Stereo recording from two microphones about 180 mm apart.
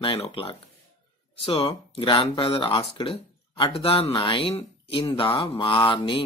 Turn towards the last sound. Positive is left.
turn(degrees=30)  # may be behind; listen again after turning